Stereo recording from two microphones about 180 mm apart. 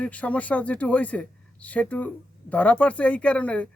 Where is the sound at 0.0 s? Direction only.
5° left (ahead or behind).